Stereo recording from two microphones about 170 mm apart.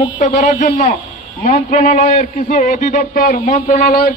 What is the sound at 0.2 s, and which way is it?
A man's voice, 45° left (ahead or behind).